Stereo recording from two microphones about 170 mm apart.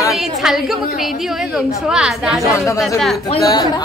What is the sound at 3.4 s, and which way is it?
Speech, 20° left (ahead or behind).